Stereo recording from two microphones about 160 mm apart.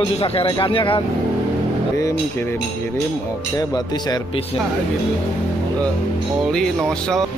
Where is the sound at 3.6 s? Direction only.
25° left (ahead or behind).